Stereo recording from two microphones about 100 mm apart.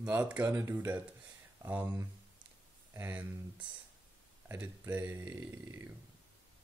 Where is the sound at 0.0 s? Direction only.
15° right (ahead or behind).